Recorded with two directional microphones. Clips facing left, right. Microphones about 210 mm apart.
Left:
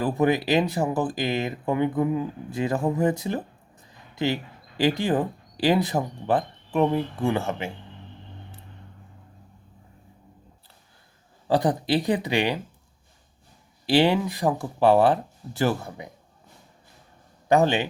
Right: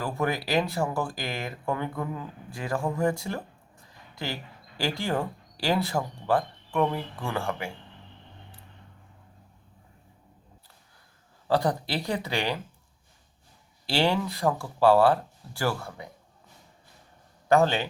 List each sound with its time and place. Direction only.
0.0 s speech: 20° left (ahead or behind)
11.4 s speech: 20° left (ahead or behind)
13.8 s speech: 15° left (ahead or behind)
17.5 s speech: 15° left (ahead or behind)